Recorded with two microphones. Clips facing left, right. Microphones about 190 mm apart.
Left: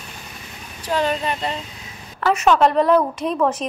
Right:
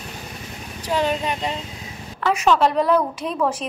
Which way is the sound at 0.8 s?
10° right (ahead or behind).